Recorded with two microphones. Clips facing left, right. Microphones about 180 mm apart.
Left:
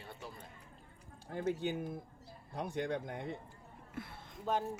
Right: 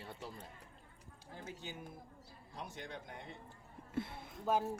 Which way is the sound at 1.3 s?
60° left (ahead or behind).